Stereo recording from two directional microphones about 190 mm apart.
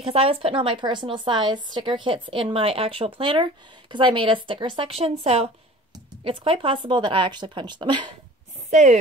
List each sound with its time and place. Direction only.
0.0 s a woman's voice: 30° right (ahead or behind)
8.6 s speech: 40° right (ahead or behind)